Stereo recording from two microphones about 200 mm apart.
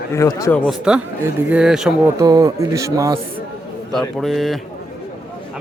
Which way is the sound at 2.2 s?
15° right (ahead or behind).